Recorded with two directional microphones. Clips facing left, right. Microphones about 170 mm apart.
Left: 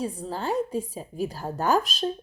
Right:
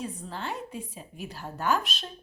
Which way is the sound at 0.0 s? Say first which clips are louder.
Left 6 dB; 40° left (ahead or behind).